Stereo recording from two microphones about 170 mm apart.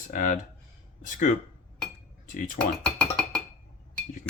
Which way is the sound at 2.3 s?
50° left (ahead or behind).